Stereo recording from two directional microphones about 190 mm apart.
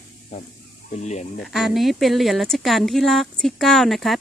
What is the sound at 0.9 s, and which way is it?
Speech, 35° left (ahead or behind).